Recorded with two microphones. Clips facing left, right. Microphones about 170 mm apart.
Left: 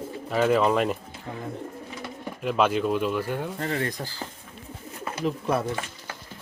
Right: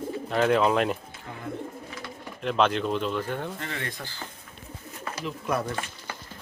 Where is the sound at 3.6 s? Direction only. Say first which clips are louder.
Left 7 dB; 40° left (ahead or behind).